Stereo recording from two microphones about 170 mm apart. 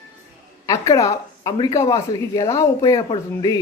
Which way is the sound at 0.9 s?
20° left (ahead or behind).